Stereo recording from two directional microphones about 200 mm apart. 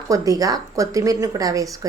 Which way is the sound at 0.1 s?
15° right (ahead or behind).